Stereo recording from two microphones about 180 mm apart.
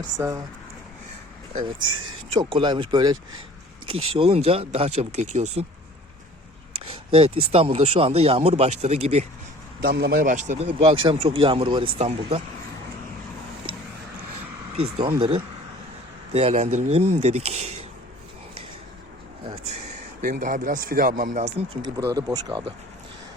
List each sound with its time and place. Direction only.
0.2 s speech: 15° right (ahead or behind)
2.3 s speech: 30° right (ahead or behind)
7.1 s speech: 30° right (ahead or behind)
9.8 s speech: 60° right (ahead or behind); by 10.7 s 40° right (ahead or behind)
10.8 s speech: 30° right (ahead or behind)
14.8 s speech: 30° right (ahead or behind)
19.5 s a sound: 35° right (ahead or behind)
20.2 s speech: 50° right (ahead or behind)
21.8 s speech: 20° right (ahead or behind)